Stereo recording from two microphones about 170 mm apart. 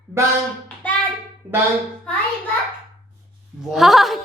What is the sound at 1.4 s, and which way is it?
Speech, 10° right (ahead or behind).